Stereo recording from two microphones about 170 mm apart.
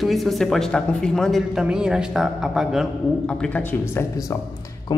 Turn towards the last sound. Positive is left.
turn(degrees=15)  # may be behind; listen again after turning